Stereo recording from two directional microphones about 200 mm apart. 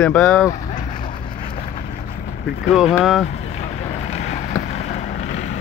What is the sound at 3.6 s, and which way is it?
Boat, 30° left (ahead or behind).